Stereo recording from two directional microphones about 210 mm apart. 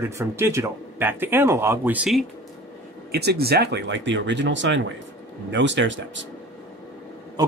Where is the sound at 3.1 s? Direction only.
50° right (ahead or behind).